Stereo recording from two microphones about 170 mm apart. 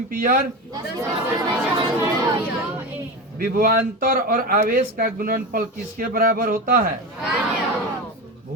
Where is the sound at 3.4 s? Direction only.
60° right (ahead or behind).